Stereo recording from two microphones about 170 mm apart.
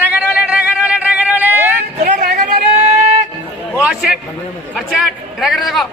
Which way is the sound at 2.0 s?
45° right (ahead or behind).